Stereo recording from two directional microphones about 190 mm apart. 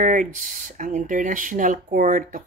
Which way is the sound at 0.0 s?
45° right (ahead or behind).